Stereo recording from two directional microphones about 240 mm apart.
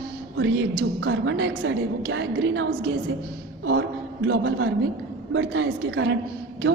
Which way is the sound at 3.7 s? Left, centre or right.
Right.